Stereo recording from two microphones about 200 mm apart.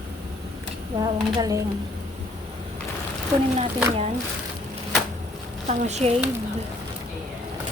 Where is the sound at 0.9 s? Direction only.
20° right (ahead or behind).